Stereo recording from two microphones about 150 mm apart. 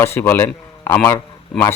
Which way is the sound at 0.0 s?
15° left (ahead or behind).